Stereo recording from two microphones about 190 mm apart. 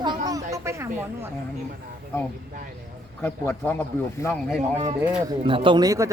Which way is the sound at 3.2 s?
10° left (ahead or behind).